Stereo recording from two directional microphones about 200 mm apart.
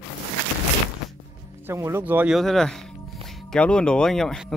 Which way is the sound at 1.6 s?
15° right (ahead or behind).